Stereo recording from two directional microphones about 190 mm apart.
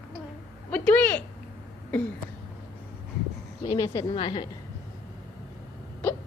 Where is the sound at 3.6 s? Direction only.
20° left (ahead or behind).